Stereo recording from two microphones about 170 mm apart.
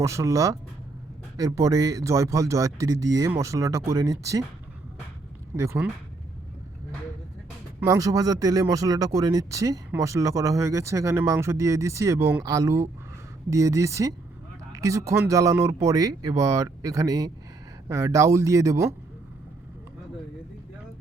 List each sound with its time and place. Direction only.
0.0 s speech: 15° right (ahead or behind)
5.5 s speech: 15° right (ahead or behind)
7.8 s speech: 20° right (ahead or behind)